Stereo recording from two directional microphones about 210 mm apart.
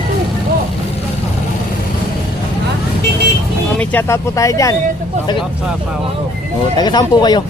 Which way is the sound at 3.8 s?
10° left (ahead or behind).